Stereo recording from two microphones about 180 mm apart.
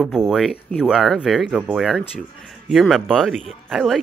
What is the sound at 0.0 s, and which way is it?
Speech, 5° right (ahead or behind).